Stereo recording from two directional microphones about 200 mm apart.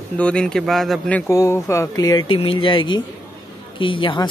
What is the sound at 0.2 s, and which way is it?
Speech, 5° left (ahead or behind).